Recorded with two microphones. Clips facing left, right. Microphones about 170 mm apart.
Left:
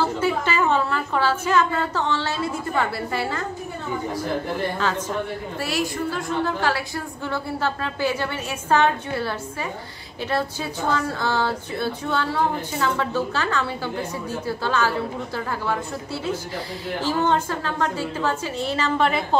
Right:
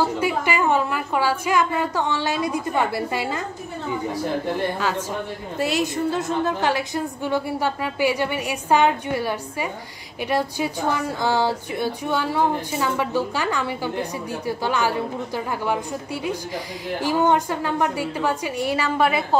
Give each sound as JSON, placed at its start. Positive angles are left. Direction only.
{"t": 0.0, "sound": "a woman's voice", "side_deg": -15}
{"t": 4.7, "sound": "a woman's voice", "side_deg": -10}
{"t": 5.6, "sound": "a woman's voice", "side_deg": -20}